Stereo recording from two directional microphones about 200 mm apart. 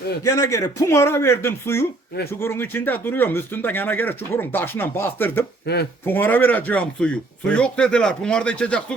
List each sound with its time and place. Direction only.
0.2 s speech: 15° left (ahead or behind)
5.6 s speech: 55° left (ahead or behind)
6.1 s speech: 10° left (ahead or behind)